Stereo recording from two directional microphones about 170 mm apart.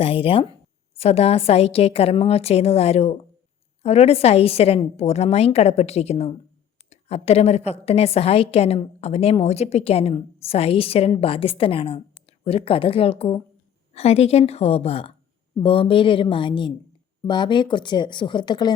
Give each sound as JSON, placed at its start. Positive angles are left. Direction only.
{"t": 0.0, "sound": "a woman's voice", "side_deg": 35}